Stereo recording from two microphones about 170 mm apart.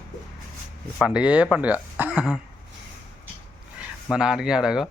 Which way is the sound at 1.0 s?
5° right (ahead or behind).